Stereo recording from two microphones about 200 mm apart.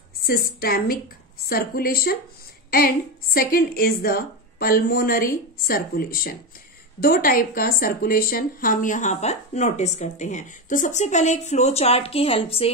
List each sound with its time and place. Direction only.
0.2 s a woman's voice: 50° left (ahead or behind); by 12.7 s 30° left (ahead or behind)